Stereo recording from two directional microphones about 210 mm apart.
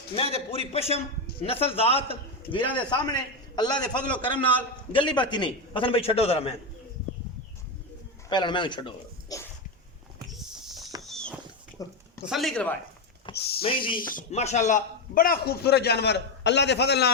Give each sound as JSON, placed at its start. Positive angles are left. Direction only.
{"t": 0.2, "sound": "a man's voice", "side_deg": 25}
{"t": 8.3, "sound": "a man's voice", "side_deg": 20}
{"t": 9.3, "sound": "dog", "side_deg": 15}
{"t": 10.3, "sound": "a sound", "side_deg": 0}
{"t": 11.8, "sound": "a sound", "side_deg": 15}
{"t": 12.3, "sound": "speech", "side_deg": 0}
{"t": 13.3, "sound": "a man's voice", "side_deg": 50}
{"t": 13.6, "sound": "a man's voice", "side_deg": 25}
{"t": 14.1, "sound": "a man's voice", "side_deg": 35}